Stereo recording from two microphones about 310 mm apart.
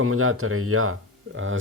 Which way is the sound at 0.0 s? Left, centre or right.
Right.